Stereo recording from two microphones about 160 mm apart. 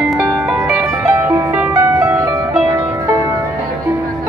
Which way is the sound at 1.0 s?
15° right (ahead or behind).